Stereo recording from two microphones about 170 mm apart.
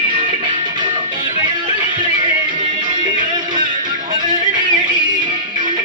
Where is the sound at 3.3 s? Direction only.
25° right (ahead or behind).